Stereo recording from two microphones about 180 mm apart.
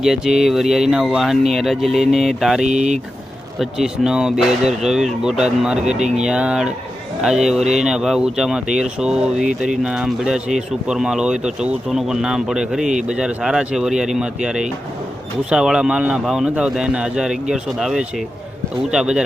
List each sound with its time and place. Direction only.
0.0 s speech: 5° right (ahead or behind)
2.6 s speech: 40° right (ahead or behind)
3.6 s speech: 5° right (ahead or behind)